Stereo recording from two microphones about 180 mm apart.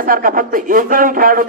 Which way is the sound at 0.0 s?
50° right (ahead or behind).